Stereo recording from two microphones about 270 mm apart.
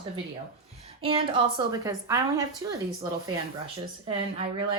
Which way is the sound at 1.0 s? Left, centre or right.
Centre.